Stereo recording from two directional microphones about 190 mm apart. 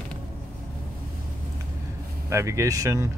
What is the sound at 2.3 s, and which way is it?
Speech, 15° right (ahead or behind).